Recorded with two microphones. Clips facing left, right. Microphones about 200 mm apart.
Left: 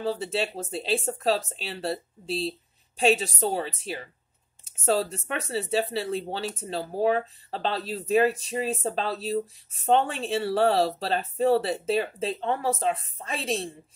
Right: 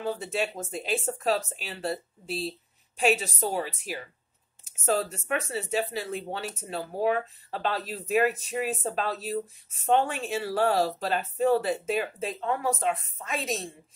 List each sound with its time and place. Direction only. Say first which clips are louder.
0.0 s a woman's voice: left 2 dB; 35° left (ahead or behind)